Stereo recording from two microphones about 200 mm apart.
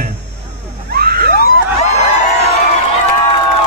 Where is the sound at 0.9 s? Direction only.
50° right (ahead or behind).